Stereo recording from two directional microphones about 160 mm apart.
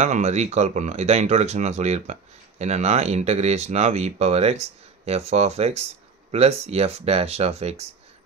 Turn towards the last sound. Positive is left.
turn(degrees=-40)  # may be behind; listen again after turning